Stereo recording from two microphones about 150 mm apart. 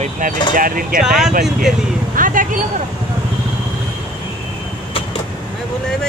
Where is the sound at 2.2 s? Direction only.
65° right (ahead or behind).